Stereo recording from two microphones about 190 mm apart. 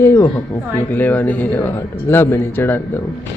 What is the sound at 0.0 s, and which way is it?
Speech, 15° left (ahead or behind).